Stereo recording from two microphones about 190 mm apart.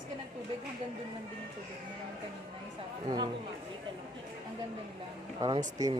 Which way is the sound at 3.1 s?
20° right (ahead or behind).